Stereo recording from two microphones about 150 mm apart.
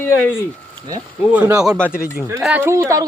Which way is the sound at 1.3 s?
10° right (ahead or behind).